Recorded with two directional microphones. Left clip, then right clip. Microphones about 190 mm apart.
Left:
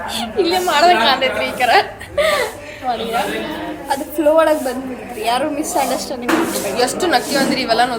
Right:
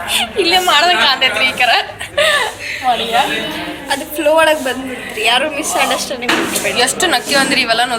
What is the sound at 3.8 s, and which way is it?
A woman's voice, 30° left (ahead or behind).